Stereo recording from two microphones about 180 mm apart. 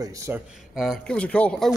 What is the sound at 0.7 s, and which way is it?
Speech, centre (ahead or behind).